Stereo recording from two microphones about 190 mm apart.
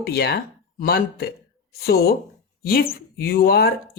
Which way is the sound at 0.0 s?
55° left (ahead or behind).